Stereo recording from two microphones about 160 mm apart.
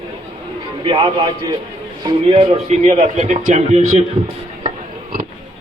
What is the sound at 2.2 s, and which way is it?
Speech, 40° right (ahead or behind).